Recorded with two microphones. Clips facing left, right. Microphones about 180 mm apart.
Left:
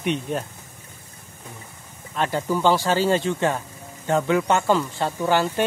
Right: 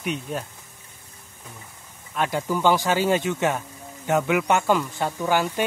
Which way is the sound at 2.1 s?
10° right (ahead or behind).